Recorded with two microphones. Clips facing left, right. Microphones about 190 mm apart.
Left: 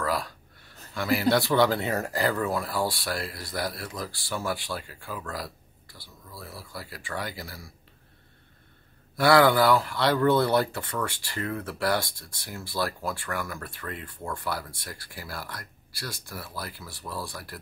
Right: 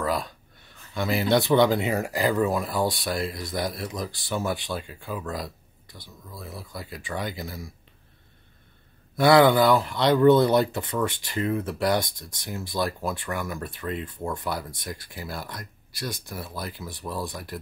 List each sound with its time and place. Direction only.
0.0 s a sound: 20° right (ahead or behind)
0.9 s speech: 20° right (ahead or behind)
9.1 s speech: 20° right (ahead or behind)